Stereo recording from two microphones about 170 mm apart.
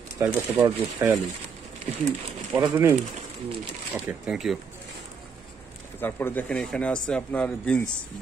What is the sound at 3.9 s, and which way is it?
Speech, 5° right (ahead or behind).